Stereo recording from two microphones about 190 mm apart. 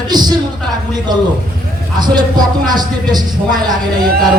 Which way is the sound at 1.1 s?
20° right (ahead or behind).